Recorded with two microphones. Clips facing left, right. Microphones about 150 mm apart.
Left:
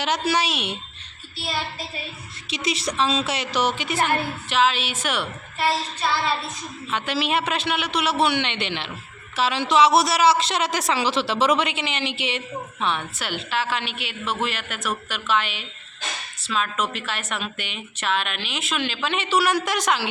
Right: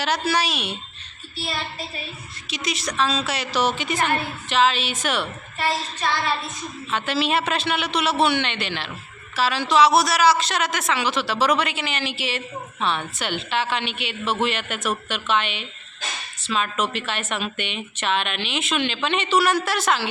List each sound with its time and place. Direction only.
0.0 s a man's voice: 20° left (ahead or behind)
2.5 s a woman's voice: 30° left (ahead or behind); by 5.3 s 10° left (ahead or behind)
6.9 s a woman's voice: 15° left (ahead or behind)